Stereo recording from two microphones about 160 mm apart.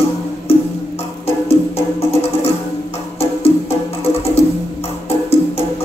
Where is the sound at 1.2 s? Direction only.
40° left (ahead or behind).